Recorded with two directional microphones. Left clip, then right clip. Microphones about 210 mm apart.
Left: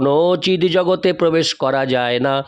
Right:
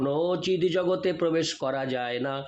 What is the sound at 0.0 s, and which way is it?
A man's voice, 55° left (ahead or behind).